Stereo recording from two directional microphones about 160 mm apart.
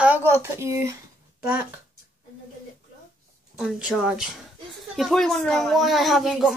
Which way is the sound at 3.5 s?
5° right (ahead or behind).